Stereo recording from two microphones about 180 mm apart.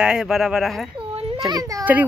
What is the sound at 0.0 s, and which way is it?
Speech, 5° right (ahead or behind).